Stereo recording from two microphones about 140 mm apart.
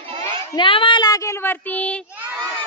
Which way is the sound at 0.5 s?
40° left (ahead or behind).